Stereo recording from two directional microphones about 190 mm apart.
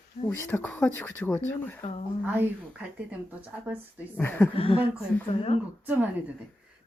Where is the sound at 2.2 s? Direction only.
10° right (ahead or behind).